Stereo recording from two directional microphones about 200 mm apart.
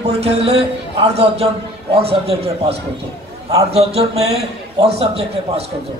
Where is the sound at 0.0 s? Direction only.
30° right (ahead or behind).